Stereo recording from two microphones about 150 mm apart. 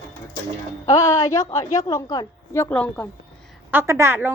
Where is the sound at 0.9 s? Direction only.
20° left (ahead or behind).